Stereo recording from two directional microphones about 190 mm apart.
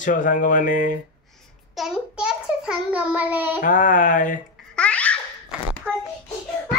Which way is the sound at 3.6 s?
45° left (ahead or behind).